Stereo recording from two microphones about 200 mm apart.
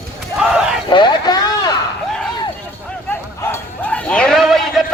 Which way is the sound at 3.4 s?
15° left (ahead or behind).